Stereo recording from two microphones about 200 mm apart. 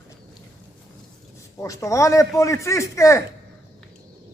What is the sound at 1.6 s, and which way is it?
A man's voice, 15° left (ahead or behind).